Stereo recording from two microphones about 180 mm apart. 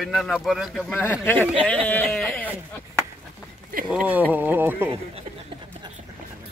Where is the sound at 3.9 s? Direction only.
5° right (ahead or behind).